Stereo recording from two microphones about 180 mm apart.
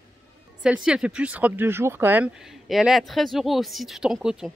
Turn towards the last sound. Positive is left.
turn(degrees=0)  # may be behind; listen again after turning